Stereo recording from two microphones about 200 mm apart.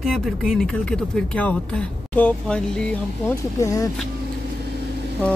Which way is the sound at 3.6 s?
15° left (ahead or behind).